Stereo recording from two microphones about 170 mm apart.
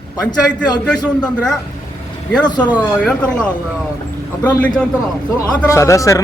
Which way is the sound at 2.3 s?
25° left (ahead or behind).